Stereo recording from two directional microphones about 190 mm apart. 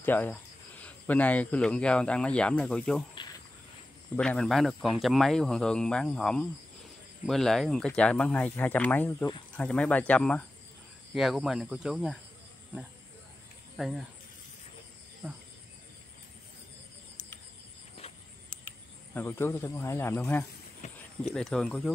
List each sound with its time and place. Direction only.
0.0 s speech: 10° left (ahead or behind)
4.2 s speech: 5° left (ahead or behind)
13.7 s speech: centre (ahead or behind)
15.2 s speech: 10° right (ahead or behind)
19.1 s speech: 10° left (ahead or behind)
20.8 s clip-clop: 40° left (ahead or behind)
21.2 s speech: 5° left (ahead or behind)